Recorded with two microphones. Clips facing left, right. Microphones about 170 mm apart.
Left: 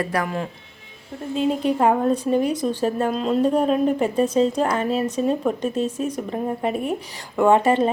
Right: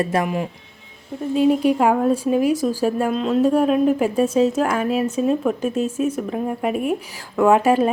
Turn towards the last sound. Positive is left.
turn(degrees=-5)  # may be behind; listen again after turning